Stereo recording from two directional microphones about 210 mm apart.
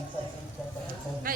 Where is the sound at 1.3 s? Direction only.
40° right (ahead or behind).